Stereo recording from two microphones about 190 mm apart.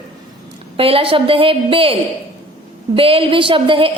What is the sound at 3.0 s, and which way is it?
Speech, 30° right (ahead or behind).